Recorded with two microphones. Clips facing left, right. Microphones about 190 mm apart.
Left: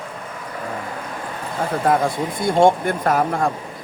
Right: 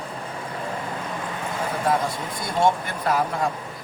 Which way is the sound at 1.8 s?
50° left (ahead or behind).